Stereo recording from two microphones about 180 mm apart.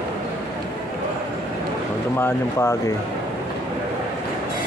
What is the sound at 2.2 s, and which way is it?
Speech, 15° left (ahead or behind).